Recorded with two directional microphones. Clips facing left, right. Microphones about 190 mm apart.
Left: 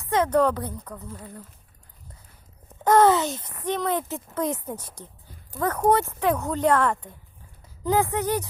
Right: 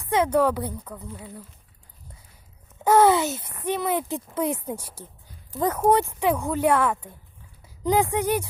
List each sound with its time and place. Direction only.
0.1 s speech: 10° right (ahead or behind)
2.8 s speech: 10° right (ahead or behind)